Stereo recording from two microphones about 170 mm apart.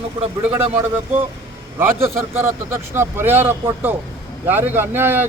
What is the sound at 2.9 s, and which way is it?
A man's voice, 15° right (ahead or behind).